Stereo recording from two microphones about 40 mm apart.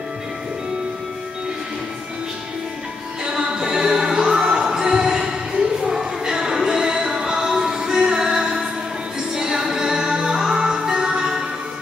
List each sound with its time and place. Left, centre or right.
3.3 s music: centre
5.8 s a sound: centre
6.6 s music: centre